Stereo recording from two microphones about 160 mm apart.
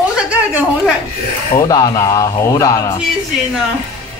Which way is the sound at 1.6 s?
25° left (ahead or behind).